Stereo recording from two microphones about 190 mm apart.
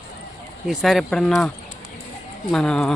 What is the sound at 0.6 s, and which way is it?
Speech, centre (ahead or behind).